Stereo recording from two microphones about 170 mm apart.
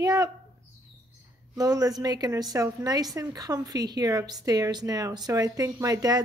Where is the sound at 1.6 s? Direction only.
20° right (ahead or behind).